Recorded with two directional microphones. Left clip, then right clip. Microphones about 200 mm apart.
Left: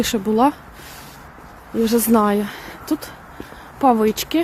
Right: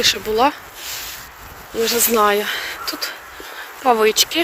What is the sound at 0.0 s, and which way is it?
Speech, 20° left (ahead or behind).